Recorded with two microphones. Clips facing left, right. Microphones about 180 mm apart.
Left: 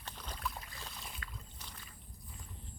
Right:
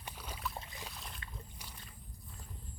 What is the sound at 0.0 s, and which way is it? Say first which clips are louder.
Boat: even; 10° right (ahead or behind).